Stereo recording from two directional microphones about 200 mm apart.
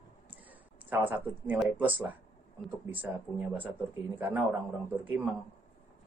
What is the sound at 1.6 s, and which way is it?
A man's voice, 10° right (ahead or behind).